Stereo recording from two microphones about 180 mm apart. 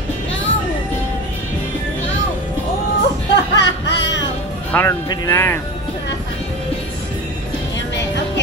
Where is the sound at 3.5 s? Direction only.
75° left (ahead or behind).